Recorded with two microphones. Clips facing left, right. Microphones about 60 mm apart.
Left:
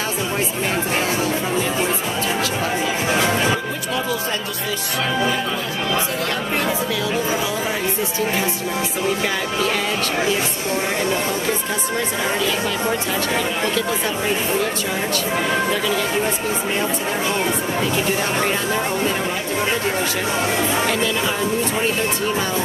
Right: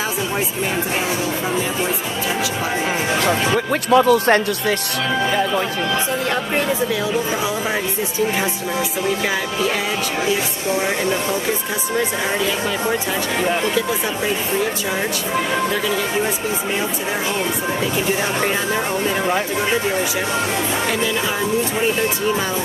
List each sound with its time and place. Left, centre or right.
3.9 s speech: right